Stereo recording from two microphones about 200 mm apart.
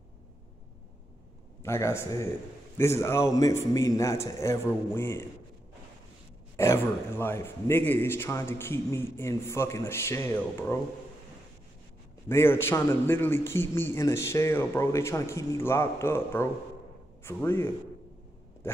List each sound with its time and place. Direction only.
1.6 s a man's voice: 15° left (ahead or behind)
6.5 s a man's voice: 15° left (ahead or behind)
12.3 s a man's voice: 10° left (ahead or behind)